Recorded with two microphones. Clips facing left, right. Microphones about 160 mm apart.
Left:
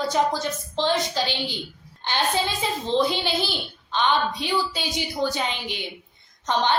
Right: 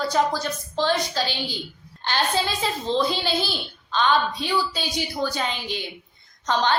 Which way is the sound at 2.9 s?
20° left (ahead or behind).